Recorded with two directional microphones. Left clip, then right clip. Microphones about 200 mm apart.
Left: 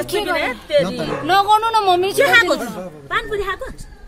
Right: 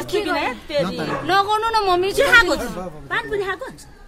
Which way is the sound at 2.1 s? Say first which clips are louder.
Right 1 dB; 30° right (ahead or behind).